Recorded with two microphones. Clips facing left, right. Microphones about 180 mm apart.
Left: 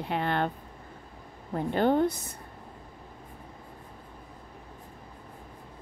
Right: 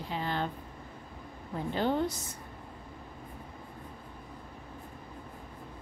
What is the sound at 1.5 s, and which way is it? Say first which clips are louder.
Speech: left 5 dB; 55° left (ahead or behind).